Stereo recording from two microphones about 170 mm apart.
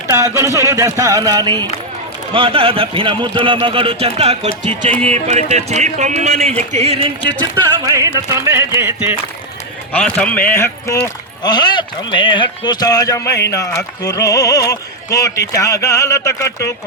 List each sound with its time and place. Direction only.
0.1 s speech: 20° right (ahead or behind); by 7.3 s 35° right (ahead or behind)
7.9 s music: 20° right (ahead or behind)
9.9 s a man's voice: 5° left (ahead or behind)
11.0 s speech: 25° left (ahead or behind)